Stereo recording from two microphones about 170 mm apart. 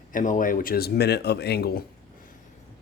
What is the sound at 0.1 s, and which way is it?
Speech, 50° left (ahead or behind).